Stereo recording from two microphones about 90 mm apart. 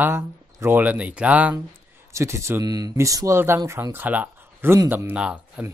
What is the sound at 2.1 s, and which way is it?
Speech, 30° right (ahead or behind).